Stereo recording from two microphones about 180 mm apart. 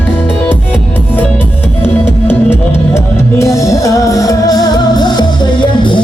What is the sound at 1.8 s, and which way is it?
Music, 10° left (ahead or behind).